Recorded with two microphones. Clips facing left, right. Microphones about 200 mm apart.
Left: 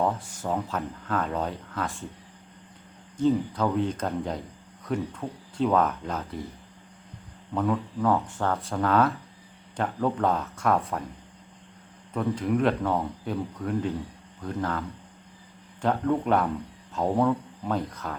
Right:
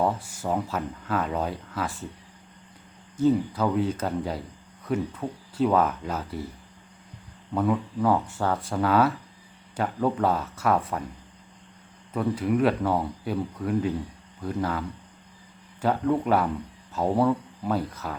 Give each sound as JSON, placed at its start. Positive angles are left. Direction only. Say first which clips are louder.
{"t": 0.0, "sound": "speech", "louder": "right 1 dB", "side_deg": -10}
{"t": 3.2, "sound": "speech", "louder": "right 1 dB", "side_deg": -5}
{"t": 7.5, "sound": "speech", "louder": "right 2 dB", "side_deg": -10}
{"t": 12.1, "sound": "speech", "louder": "right 1 dB", "side_deg": -5}